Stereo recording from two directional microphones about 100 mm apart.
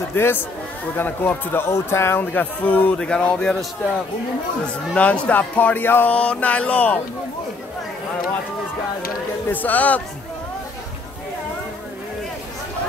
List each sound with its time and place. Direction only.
0.1 s speech: 20° left (ahead or behind)
4.9 s speech: 10° left (ahead or behind)
9.5 s speech: 15° left (ahead or behind)